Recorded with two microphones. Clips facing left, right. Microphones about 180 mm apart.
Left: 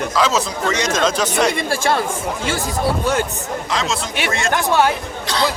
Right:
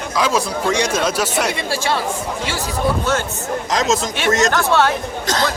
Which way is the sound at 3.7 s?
40° right (ahead or behind).